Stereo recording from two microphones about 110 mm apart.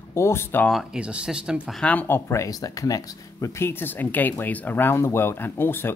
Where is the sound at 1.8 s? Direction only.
15° left (ahead or behind).